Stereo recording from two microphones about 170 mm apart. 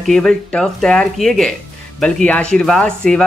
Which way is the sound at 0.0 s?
Centre (ahead or behind).